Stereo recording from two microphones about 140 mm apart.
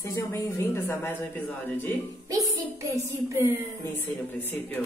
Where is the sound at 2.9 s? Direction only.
20° right (ahead or behind).